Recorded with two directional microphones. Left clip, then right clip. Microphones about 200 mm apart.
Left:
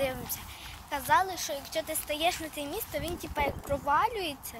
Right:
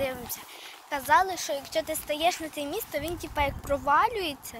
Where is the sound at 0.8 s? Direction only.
20° right (ahead or behind).